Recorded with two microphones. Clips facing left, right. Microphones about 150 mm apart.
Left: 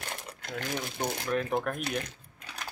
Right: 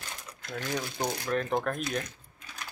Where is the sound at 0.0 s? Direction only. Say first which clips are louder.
Left 4 dB; 60° left (ahead or behind).